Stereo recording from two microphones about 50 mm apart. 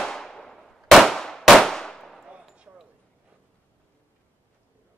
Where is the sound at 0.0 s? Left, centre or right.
Centre.